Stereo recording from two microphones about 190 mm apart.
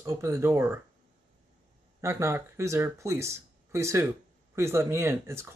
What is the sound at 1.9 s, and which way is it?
Speech, 15° right (ahead or behind).